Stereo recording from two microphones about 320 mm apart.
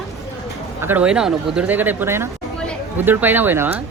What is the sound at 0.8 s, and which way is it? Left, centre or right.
Speech, centre.